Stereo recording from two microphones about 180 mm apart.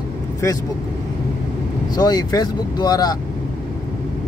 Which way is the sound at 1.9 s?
20° left (ahead or behind).